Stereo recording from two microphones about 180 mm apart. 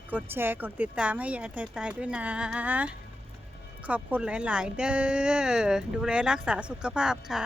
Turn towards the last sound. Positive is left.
turn(degrees=-5)  # may be behind; listen again after turning